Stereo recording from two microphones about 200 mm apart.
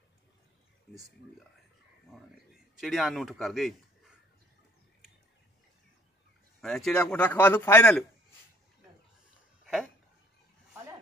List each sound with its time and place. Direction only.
2.8 s a man's voice: centre (ahead or behind)
6.6 s a man's voice: centre (ahead or behind)